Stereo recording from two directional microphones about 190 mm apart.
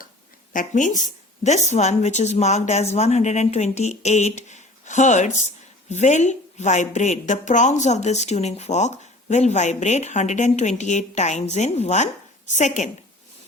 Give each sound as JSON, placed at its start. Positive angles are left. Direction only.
{"t": 0.5, "sound": "a woman's voice", "side_deg": 45}